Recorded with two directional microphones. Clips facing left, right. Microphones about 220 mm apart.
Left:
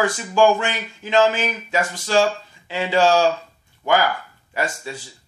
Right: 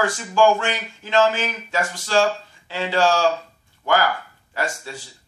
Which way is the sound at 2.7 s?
15° left (ahead or behind).